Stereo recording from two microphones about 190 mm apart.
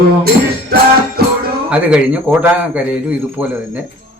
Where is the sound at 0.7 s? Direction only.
55° right (ahead or behind).